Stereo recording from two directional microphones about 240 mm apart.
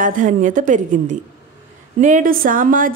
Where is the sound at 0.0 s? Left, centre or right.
Right.